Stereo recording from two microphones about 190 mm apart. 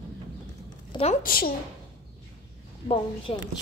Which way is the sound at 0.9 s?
35° left (ahead or behind).